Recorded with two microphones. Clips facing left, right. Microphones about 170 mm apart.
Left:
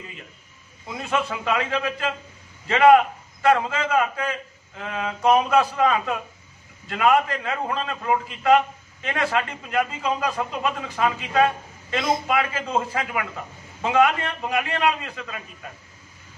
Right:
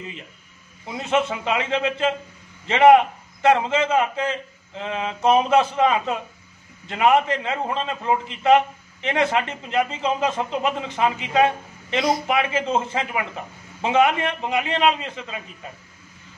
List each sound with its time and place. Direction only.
0.8 s a man's voice: 20° right (ahead or behind)